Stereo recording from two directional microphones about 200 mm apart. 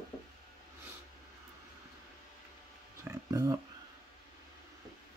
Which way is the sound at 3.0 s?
15° right (ahead or behind).